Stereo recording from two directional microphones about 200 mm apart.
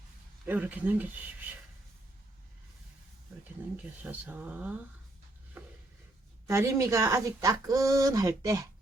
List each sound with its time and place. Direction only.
0.4 s speech: 10° right (ahead or behind)
4.0 s speech: 10° right (ahead or behind)
6.5 s speech: 15° right (ahead or behind)